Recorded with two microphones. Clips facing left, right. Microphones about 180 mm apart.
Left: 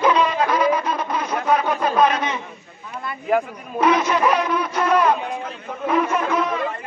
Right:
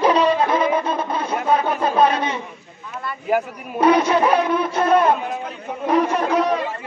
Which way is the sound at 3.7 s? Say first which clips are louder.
Right 3 dB; 30° right (ahead or behind).